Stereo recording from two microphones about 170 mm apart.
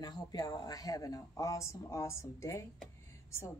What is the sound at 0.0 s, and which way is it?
Speech, 25° left (ahead or behind).